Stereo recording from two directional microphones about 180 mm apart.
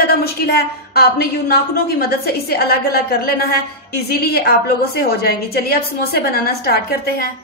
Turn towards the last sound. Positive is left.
turn(degrees=60)  # may be behind; listen again after turning